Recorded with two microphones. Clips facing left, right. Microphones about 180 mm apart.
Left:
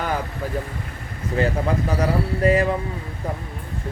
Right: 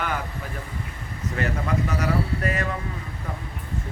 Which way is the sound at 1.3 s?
30° left (ahead or behind).